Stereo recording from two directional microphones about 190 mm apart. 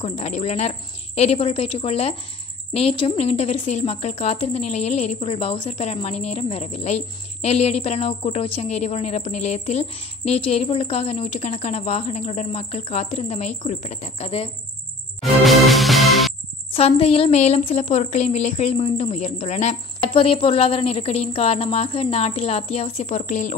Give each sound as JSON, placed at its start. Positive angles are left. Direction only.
{"t": 0.0, "sound": "a woman's voice", "side_deg": 35}
{"t": 15.2, "sound": "music", "side_deg": 0}
{"t": 16.7, "sound": "a woman's voice", "side_deg": 30}